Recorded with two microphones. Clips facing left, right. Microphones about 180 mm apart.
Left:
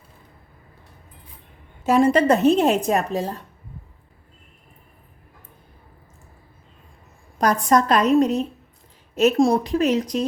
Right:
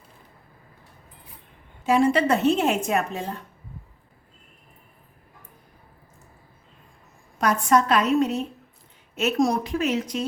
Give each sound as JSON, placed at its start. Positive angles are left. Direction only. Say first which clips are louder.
{"t": 1.8, "sound": "a woman's voice", "louder": "left 3 dB", "side_deg": 40}
{"t": 7.3, "sound": "a woman's voice", "louder": "left 2 dB", "side_deg": 40}